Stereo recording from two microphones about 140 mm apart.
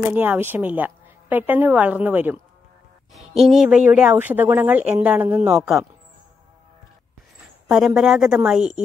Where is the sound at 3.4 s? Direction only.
5° right (ahead or behind).